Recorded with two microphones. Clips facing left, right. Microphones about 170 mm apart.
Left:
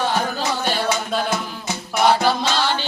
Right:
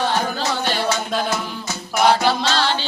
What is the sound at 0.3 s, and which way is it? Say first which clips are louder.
Music: even; 10° left (ahead or behind).